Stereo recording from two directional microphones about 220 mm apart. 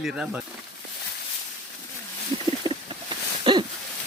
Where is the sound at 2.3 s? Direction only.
30° right (ahead or behind).